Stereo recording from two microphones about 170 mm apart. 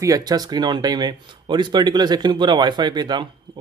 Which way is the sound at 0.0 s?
20° right (ahead or behind).